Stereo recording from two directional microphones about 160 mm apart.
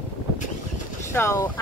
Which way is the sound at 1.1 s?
15° left (ahead or behind).